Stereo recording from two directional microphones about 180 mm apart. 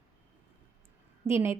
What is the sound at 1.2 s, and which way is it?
Speech, 15° right (ahead or behind).